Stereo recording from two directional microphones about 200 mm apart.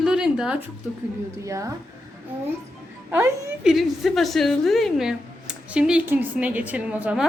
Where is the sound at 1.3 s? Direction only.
15° right (ahead or behind).